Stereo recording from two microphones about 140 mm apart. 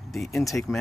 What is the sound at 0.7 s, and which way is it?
Speech, 5° right (ahead or behind).